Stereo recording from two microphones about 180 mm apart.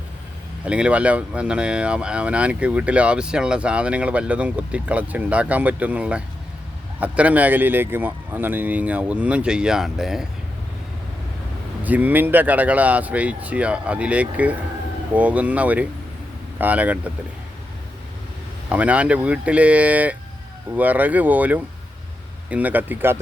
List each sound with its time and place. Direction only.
0.6 s speech: 5° right (ahead or behind)
11.8 s speech: 10° right (ahead or behind)
18.7 s speech: 5° right (ahead or behind)